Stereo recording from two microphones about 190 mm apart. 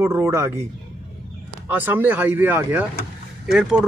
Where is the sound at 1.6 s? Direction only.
10° right (ahead or behind).